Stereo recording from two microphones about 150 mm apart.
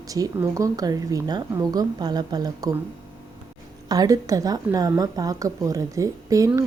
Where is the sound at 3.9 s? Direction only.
25° right (ahead or behind).